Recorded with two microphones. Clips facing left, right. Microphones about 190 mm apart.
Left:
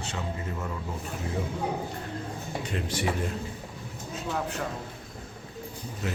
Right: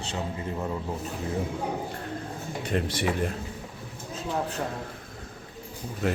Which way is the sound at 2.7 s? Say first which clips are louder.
Right 7 dB; 55° right (ahead or behind).